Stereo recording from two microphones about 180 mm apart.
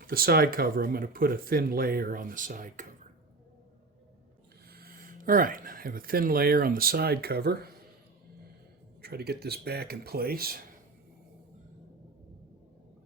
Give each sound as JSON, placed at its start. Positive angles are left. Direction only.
{"t": 0.1, "sound": "speech", "side_deg": -55}
{"t": 4.7, "sound": "speech", "side_deg": -55}
{"t": 9.0, "sound": "speech", "side_deg": -60}